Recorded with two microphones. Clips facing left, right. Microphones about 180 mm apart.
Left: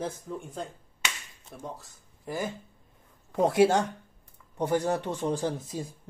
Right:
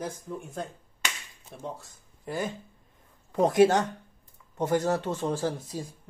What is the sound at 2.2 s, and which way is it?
Speech, 10° left (ahead or behind).